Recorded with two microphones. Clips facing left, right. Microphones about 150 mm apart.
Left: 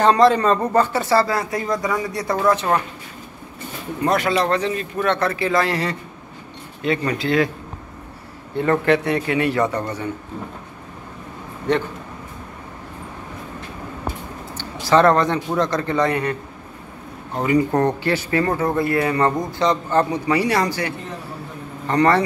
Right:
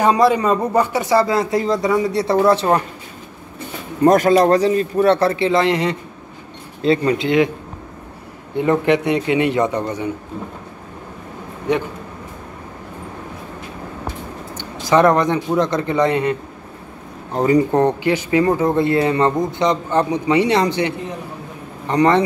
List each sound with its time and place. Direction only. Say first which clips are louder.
0.0 s speech: even; 10° right (ahead or behind); by 2.7 s 30° right (ahead or behind)
4.0 s speech: right 7 dB; 45° right (ahead or behind); by 7.5 s 20° right (ahead or behind)
8.5 s speech: right 2 dB; 15° right (ahead or behind)
11.7 s a man's voice: right 1 dB; 10° right (ahead or behind)
14.5 s speech: right 1 dB; 15° right (ahead or behind)
17.3 s speech: right 3 dB; 30° right (ahead or behind)
17.6 s speech: right 3 dB; 20° right (ahead or behind)